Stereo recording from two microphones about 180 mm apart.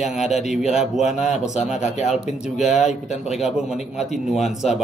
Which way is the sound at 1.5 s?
40° left (ahead or behind).